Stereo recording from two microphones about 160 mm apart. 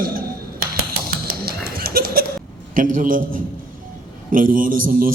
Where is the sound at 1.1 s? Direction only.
65° right (ahead or behind).